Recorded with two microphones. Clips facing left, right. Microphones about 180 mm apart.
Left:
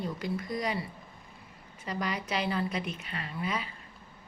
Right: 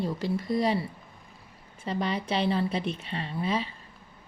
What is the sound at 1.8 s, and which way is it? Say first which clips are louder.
Speech: right 4 dB; 30° right (ahead or behind).